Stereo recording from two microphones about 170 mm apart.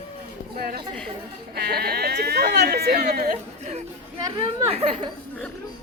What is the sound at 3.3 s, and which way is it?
Speech, 45° right (ahead or behind).